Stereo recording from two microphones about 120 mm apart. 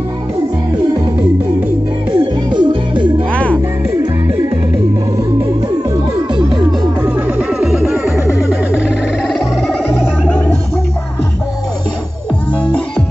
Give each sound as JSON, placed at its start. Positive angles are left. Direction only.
{"t": 2.1, "sound": "music", "side_deg": -40}
{"t": 3.3, "sound": "music", "side_deg": 10}
{"t": 7.0, "sound": "music", "side_deg": -15}
{"t": 9.3, "sound": "music", "side_deg": -5}
{"t": 10.2, "sound": "gargling", "side_deg": 10}